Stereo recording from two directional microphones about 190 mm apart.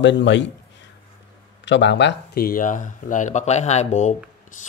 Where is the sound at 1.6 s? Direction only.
70° left (ahead or behind).